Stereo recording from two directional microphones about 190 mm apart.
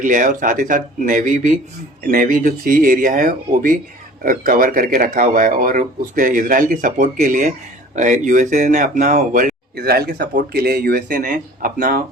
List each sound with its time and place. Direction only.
0.0 s speech: 45° right (ahead or behind)